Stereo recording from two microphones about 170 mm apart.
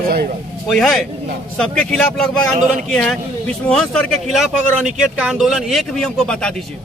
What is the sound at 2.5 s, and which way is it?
Speech, 50° right (ahead or behind).